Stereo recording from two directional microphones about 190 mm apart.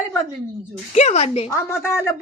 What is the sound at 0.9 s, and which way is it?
Speech, 35° left (ahead or behind).